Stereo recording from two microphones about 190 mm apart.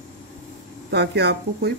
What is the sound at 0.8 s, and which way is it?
Speech, 60° right (ahead or behind).